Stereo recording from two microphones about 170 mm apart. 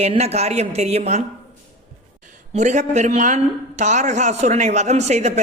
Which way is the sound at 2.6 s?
45° right (ahead or behind).